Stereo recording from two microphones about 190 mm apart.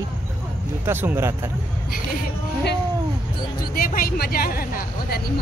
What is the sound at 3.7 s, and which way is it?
Speech, 50° left (ahead or behind).